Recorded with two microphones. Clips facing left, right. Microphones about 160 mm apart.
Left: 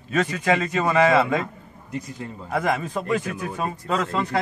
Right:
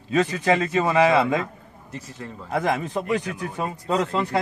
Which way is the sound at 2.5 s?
20° right (ahead or behind).